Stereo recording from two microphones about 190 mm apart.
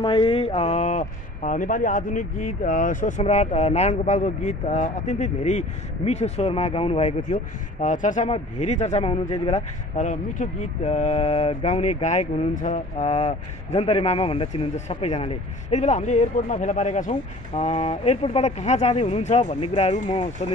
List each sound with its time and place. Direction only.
0.0 s speech: 25° left (ahead or behind)